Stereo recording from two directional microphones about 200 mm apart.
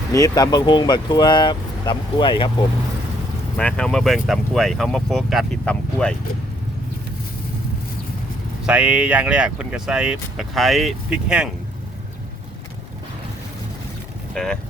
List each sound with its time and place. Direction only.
0.1 s speech: 15° left (ahead or behind)
3.6 s speech: 5° left (ahead or behind)
8.6 s speech: 5° right (ahead or behind)
14.3 s speech: centre (ahead or behind)